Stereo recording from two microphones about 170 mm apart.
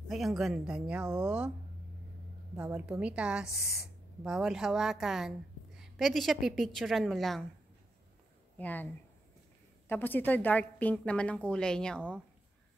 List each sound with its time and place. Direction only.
0.1 s speech: centre (ahead or behind)
2.5 s speech: 15° right (ahead or behind); by 7.4 s centre (ahead or behind)
8.5 s a woman's voice: 10° left (ahead or behind)
9.8 s a woman's voice: 10° left (ahead or behind)